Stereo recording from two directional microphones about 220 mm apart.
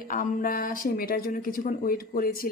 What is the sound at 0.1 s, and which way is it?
Speech, 40° left (ahead or behind).